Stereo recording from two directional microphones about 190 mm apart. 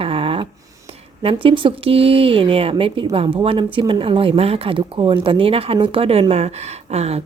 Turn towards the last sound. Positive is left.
turn(degrees=-35)  # may be behind; listen again after turning